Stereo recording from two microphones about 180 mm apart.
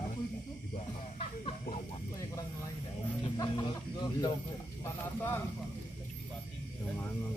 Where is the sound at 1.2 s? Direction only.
30° left (ahead or behind).